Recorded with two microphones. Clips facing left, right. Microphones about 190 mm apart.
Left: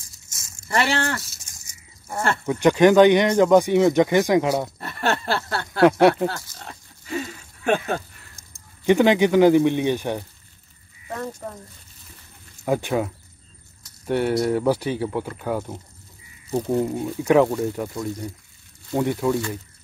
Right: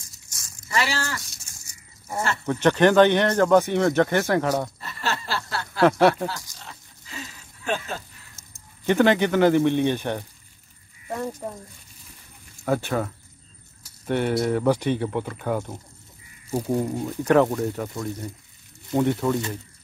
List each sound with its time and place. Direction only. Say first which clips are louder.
0.3 s a sound: left 1 dB; 25° left (ahead or behind)
0.7 s speech: left 4 dB; 55° left (ahead or behind)
2.4 s speech: left 3 dB; 10° left (ahead or behind)
4.7 s a sound: left 5 dB; 55° left (ahead or behind)
5.9 s speech: left 3 dB; 15° left (ahead or behind)
6.6 s a sound: left 4 dB; 55° left (ahead or behind)
8.4 s speech: even; 15° left (ahead or behind)
11.1 s speech: right 1 dB; 15° right (ahead or behind)
12.6 s speech: left 2 dB; 10° left (ahead or behind)
16.8 s speech: left 2 dB; 5° left (ahead or behind)
17.9 s speech: left 2 dB; centre (ahead or behind)